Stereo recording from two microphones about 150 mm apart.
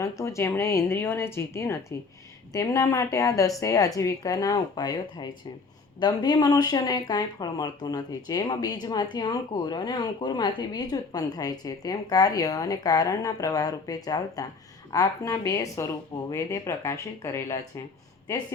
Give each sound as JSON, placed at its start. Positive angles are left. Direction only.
{"t": 0.0, "sound": "a woman's voice", "side_deg": 20}